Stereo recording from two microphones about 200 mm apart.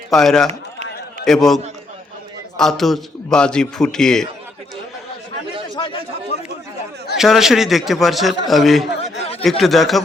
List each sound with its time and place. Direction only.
0.1 s a man's voice: centre (ahead or behind)
5.7 s a sound: 25° left (ahead or behind)
7.2 s a man's voice: centre (ahead or behind)
9.0 s chatter: 30° left (ahead or behind)
9.4 s a man's voice: centre (ahead or behind)